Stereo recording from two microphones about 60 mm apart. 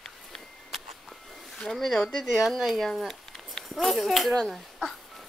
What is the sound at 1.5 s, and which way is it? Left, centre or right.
Speech, centre.